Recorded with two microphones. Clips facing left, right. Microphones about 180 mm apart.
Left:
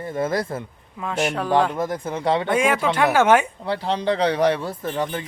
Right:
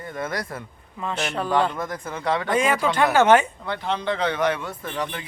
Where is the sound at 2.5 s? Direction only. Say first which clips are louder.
Left 1 dB; 10° left (ahead or behind).